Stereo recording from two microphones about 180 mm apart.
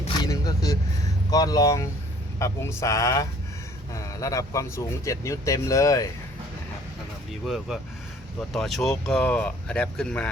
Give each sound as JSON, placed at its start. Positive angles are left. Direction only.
{"t": 0.2, "sound": "vehicle", "side_deg": 20}
{"t": 1.3, "sound": "speech", "side_deg": 20}
{"t": 7.4, "sound": "speech", "side_deg": 0}